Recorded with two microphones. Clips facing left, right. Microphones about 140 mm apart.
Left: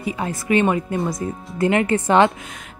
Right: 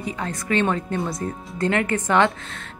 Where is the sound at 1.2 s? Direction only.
20° left (ahead or behind).